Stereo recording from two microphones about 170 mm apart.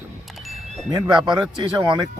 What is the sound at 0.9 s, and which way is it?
Speech, 25° right (ahead or behind).